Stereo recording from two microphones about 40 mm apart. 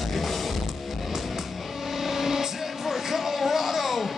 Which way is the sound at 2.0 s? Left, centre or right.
Centre.